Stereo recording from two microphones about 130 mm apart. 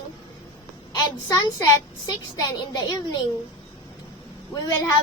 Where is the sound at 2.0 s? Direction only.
30° left (ahead or behind).